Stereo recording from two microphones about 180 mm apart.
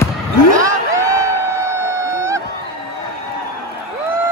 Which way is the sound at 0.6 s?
15° right (ahead or behind).